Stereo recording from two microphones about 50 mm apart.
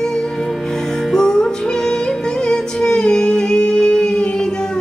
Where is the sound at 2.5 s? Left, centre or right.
Centre.